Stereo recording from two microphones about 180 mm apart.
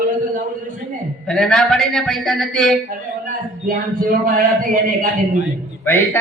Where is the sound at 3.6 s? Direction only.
50° right (ahead or behind).